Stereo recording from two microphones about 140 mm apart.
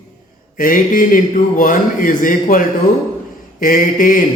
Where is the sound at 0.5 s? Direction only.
75° left (ahead or behind).